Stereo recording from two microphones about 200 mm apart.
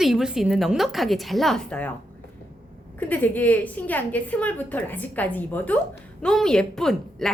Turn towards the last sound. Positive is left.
turn(degrees=0)  # may be behind; listen again after turning